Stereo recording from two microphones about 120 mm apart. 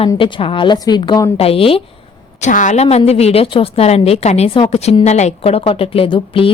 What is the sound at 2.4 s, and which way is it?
A woman's voice, 90° left.